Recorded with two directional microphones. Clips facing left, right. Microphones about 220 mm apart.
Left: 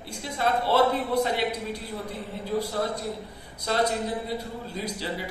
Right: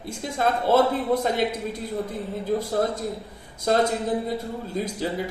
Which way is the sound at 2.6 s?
50° right (ahead or behind).